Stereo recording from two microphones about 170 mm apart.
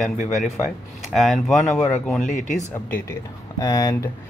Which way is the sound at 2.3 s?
45° left (ahead or behind).